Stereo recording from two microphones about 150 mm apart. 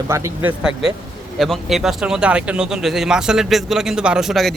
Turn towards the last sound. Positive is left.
turn(degrees=0)  # may be behind; listen again after turning